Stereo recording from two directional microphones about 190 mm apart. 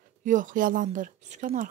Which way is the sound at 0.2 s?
45° right (ahead or behind).